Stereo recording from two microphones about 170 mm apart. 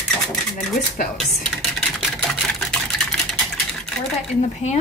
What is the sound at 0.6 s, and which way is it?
Speech, 55° left (ahead or behind).